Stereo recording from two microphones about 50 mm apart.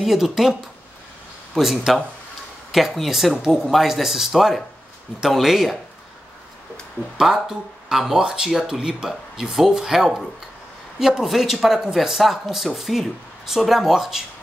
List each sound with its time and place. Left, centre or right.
0.0 s speech: centre
7.2 s speech: centre